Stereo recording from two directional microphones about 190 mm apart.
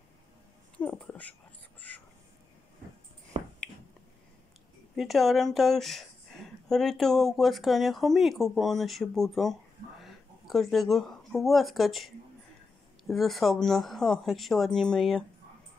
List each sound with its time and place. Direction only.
0.7 s a sound: 5° left (ahead or behind)
3.3 s finger snapping: 30° right (ahead or behind)
4.9 s speech: centre (ahead or behind)
13.1 s speech: centre (ahead or behind)